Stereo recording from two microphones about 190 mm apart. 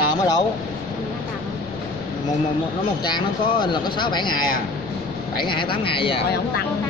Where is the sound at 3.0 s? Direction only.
25° left (ahead or behind).